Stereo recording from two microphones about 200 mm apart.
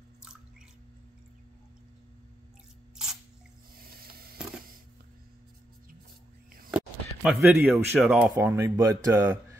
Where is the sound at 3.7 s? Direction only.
50° right (ahead or behind).